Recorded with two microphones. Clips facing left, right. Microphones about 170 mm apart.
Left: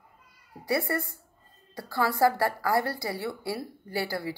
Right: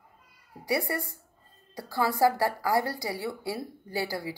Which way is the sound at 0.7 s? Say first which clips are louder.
Left 1 dB; 15° right (ahead or behind).